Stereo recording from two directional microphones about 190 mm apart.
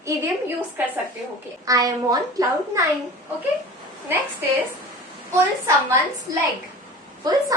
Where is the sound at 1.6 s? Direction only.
20° right (ahead or behind).